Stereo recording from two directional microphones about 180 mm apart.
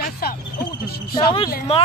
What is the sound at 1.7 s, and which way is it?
Speech, 35° left (ahead or behind).